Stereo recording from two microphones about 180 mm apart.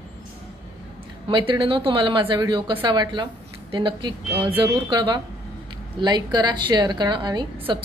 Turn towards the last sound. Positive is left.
turn(degrees=-25)  # may be behind; listen again after turning